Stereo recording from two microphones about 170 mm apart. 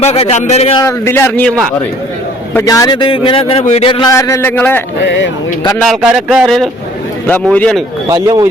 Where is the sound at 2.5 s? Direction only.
20° left (ahead or behind).